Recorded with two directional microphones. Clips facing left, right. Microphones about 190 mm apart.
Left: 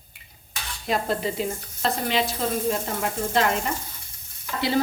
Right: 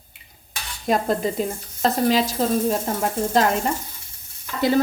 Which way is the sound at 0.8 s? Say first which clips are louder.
Right 4 dB; 45° right (ahead or behind).